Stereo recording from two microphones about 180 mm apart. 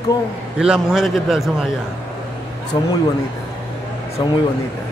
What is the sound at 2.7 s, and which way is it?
Speech, 25° left (ahead or behind).